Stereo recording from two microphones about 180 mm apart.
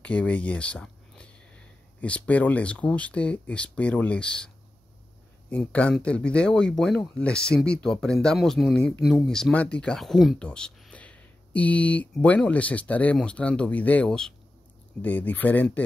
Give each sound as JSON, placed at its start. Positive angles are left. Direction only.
{"t": 0.0, "sound": "speech", "side_deg": 5}
{"t": 5.5, "sound": "speech", "side_deg": 5}